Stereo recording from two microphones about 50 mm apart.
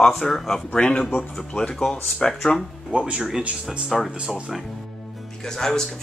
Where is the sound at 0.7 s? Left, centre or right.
Centre.